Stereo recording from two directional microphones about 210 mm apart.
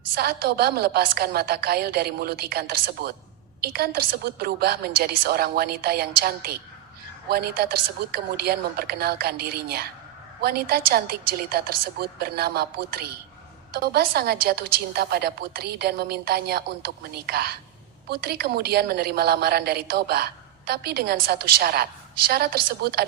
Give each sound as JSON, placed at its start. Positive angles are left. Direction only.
{"t": 0.2, "sound": "a woman's voice", "side_deg": -50}